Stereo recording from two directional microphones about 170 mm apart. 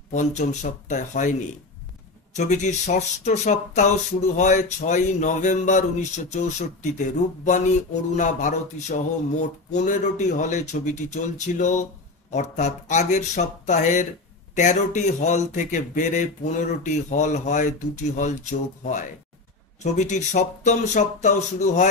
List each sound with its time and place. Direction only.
0.1 s speech: 45° left (ahead or behind)
2.3 s speech: 45° left (ahead or behind)